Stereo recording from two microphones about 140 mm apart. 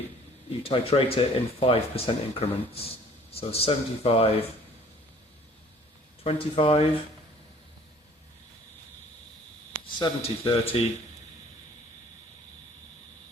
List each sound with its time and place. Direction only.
0.6 s speech: 40° left (ahead or behind)
6.2 s speech: 45° left (ahead or behind)
10.0 s speech: 40° left (ahead or behind)